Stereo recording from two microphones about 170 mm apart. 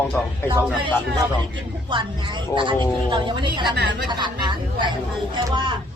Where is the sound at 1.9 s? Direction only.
30° right (ahead or behind).